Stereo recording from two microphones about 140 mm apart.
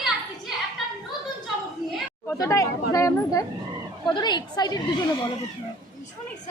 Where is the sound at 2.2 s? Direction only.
20° left (ahead or behind).